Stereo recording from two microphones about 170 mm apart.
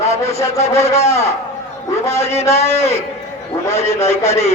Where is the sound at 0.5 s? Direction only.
15° left (ahead or behind).